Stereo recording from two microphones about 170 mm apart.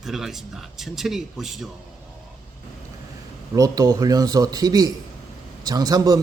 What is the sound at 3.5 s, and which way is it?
Speech, 20° right (ahead or behind).